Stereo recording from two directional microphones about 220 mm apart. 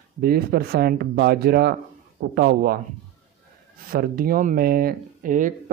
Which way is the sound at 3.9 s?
40° right (ahead or behind).